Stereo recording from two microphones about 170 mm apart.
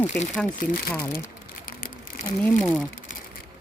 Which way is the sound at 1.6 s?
55° left (ahead or behind).